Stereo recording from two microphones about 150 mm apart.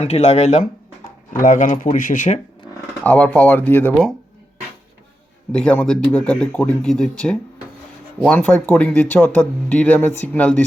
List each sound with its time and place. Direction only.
0.0 s speech: 45° left (ahead or behind)
3.0 s speech: 10° left (ahead or behind)
5.5 s speech: 5° left (ahead or behind)